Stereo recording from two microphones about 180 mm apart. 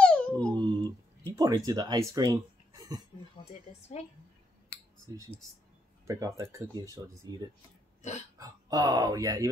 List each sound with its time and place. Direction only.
0.0 s dog: 5° left (ahead or behind)
0.6 s a sound: 25° right (ahead or behind)
1.3 s speech: 20° right (ahead or behind)
6.0 s speech: 15° right (ahead or behind)